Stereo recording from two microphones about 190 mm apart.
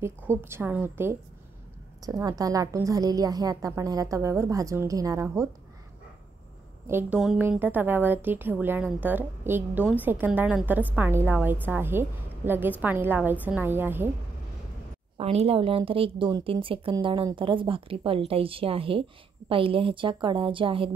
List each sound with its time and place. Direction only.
0.3 s a woman's voice: 10° right (ahead or behind)
6.9 s a woman's voice: 10° right (ahead or behind)
15.1 s a woman's voice: 30° right (ahead or behind)